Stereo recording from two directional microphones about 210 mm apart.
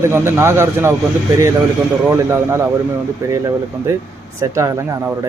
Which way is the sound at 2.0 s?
10° right (ahead or behind).